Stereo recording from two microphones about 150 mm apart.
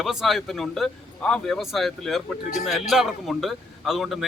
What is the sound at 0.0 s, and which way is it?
A man's voice, centre (ahead or behind).